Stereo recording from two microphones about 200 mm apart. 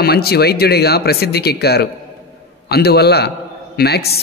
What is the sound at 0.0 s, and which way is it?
A man's voice, 50° left (ahead or behind).